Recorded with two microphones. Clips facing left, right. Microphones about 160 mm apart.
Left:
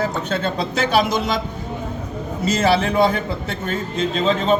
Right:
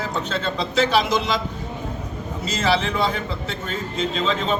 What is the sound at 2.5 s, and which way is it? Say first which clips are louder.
Speech: left 4 dB; 50° left (ahead or behind).